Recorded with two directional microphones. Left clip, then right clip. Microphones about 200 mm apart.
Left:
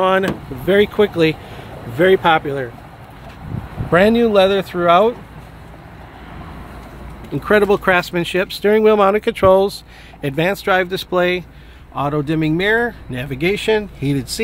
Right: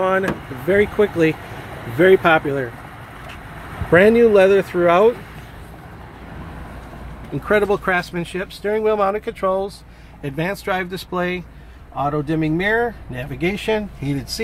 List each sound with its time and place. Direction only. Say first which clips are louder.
0.7 s speech: left 2 dB; 15° left (ahead or behind)
2.0 s speech: even; 5° right (ahead or behind)
3.9 s speech: right 1 dB; 5° right (ahead or behind)
7.3 s speech: left 3 dB; 25° left (ahead or behind)